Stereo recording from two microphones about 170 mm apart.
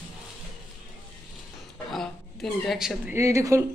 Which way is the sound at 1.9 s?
Centre (ahead or behind).